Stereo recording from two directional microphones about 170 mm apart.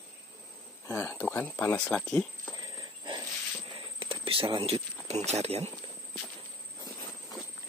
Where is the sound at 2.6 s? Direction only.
25° right (ahead or behind).